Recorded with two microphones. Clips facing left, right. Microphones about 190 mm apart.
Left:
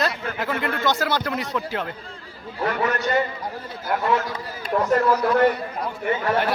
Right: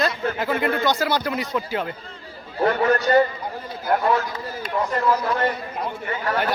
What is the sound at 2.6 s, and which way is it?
Speech, 35° right (ahead or behind).